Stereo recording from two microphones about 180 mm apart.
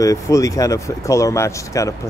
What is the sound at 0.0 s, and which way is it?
Speech, 20° left (ahead or behind).